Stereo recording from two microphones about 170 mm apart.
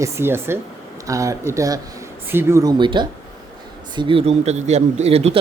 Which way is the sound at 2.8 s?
30° right (ahead or behind).